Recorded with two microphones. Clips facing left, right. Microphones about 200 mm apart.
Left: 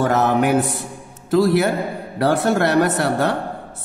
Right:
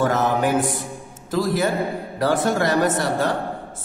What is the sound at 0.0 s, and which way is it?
Mantra, 60° left (ahead or behind).